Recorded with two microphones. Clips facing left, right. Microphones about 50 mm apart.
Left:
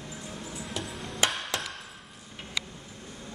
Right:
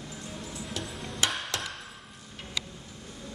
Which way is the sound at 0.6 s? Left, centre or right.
Centre.